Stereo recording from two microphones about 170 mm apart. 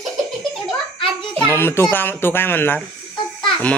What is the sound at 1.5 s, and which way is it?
Speech, 15° left (ahead or behind).